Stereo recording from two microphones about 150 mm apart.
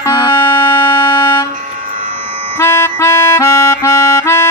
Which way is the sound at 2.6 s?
15° left (ahead or behind).